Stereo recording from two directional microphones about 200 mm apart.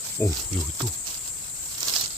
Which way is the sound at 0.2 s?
10° left (ahead or behind).